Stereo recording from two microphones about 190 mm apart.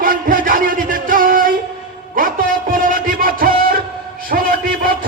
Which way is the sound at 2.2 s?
45° right (ahead or behind).